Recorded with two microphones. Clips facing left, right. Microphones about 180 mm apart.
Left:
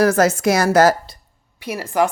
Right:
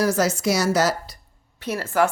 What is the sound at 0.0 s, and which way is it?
Speech, 55° left (ahead or behind).